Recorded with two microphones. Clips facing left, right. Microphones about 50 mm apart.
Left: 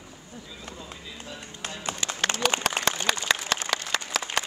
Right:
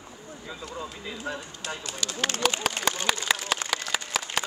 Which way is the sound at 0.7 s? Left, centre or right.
Right.